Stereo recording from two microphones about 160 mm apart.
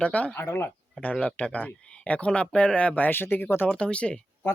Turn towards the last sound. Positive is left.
turn(degrees=5)  # may be behind; listen again after turning